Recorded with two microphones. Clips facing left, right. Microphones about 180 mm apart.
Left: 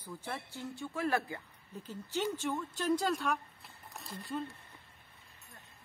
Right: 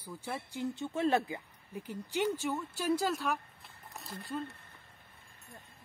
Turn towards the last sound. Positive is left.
turn(degrees=0)  # may be behind; listen again after turning